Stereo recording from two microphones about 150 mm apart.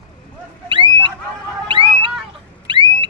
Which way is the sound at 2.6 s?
30° right (ahead or behind).